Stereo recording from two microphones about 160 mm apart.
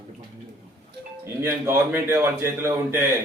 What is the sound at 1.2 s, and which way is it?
A man's voice, 15° right (ahead or behind).